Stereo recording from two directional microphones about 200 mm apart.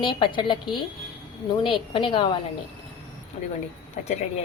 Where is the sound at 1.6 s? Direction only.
25° left (ahead or behind).